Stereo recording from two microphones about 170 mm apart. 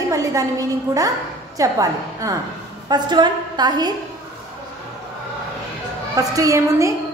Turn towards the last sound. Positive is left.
turn(degrees=-20)  # may be behind; listen again after turning